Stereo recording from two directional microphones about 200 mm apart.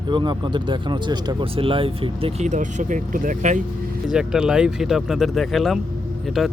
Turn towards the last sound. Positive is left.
turn(degrees=0)  # may be behind; listen again after turning